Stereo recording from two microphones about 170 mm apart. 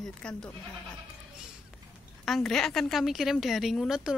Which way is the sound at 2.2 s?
Centre (ahead or behind).